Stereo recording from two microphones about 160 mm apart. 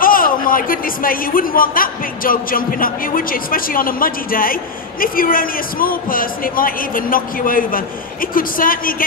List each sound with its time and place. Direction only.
0.0 s a man's voice: 60° left (ahead or behind)